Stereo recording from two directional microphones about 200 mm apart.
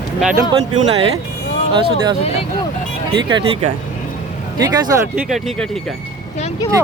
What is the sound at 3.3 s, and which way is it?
Speech, 25° right (ahead or behind).